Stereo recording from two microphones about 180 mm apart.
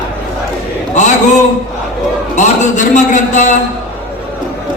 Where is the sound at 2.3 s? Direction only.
45° left (ahead or behind).